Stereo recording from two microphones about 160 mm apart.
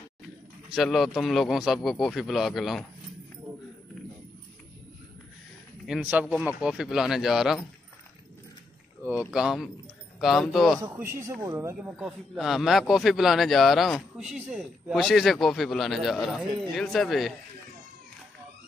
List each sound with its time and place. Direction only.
0.7 s speech: centre (ahead or behind)
5.9 s speech: 5° right (ahead or behind)
9.0 s speech: 5° right (ahead or behind)
10.8 s speech: 15° right (ahead or behind)
12.4 s speech: centre (ahead or behind)